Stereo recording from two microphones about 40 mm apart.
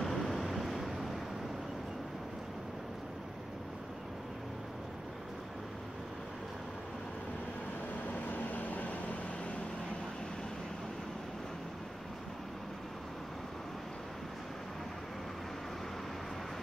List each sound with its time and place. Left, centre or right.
0.0 s vehicle: centre
8.3 s vehicle: left